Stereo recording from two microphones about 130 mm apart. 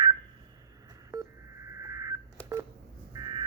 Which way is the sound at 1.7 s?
25° right (ahead or behind).